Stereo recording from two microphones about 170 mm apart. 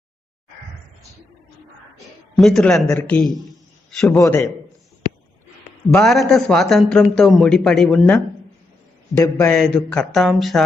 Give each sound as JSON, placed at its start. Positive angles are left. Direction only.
{"t": 2.3, "sound": "a man's voice", "side_deg": 0}
{"t": 4.2, "sound": "a man's voice", "side_deg": 20}
{"t": 5.9, "sound": "a man's voice", "side_deg": 0}
{"t": 9.1, "sound": "speech", "side_deg": 20}
{"t": 9.5, "sound": "a man's voice", "side_deg": 5}